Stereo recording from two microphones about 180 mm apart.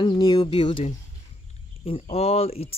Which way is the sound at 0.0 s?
25° left (ahead or behind).